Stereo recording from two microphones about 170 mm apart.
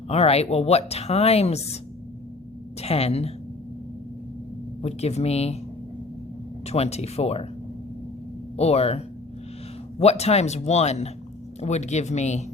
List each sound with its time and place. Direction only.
0.1 s speech: 40° left (ahead or behind)
2.8 s speech: 35° left (ahead or behind)
4.8 s speech: 40° left (ahead or behind)
6.7 s speech: 40° left (ahead or behind)
8.5 s speech: 35° left (ahead or behind)